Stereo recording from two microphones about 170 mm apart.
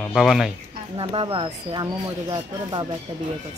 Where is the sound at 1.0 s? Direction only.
30° right (ahead or behind).